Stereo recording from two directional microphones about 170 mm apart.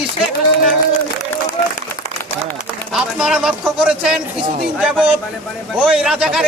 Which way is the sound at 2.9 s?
5° right (ahead or behind).